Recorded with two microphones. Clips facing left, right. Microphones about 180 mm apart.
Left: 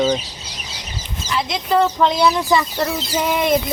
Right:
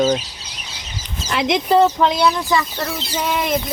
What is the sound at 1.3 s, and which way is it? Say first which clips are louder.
Speech: right 4 dB; 65° right (ahead or behind).